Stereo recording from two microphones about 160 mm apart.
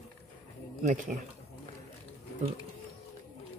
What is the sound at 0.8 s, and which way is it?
Speech, 50° right (ahead or behind).